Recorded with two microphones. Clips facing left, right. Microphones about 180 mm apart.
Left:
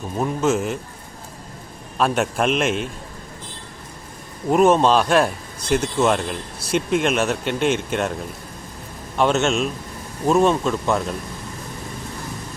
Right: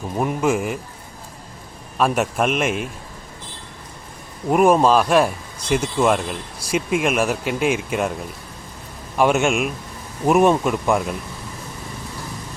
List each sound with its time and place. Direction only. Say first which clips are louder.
0.2 s speech: even; 10° right (ahead or behind)
2.0 s a man's voice: right 1 dB; 5° right (ahead or behind)
4.4 s speech: even; 10° right (ahead or behind)
9.1 s speech: right 1 dB; 10° right (ahead or behind)